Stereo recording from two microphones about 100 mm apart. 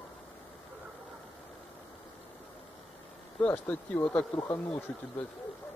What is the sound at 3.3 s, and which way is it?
Speech, 15° left (ahead or behind).